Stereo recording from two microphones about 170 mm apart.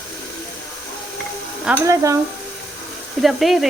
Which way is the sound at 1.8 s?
20° right (ahead or behind).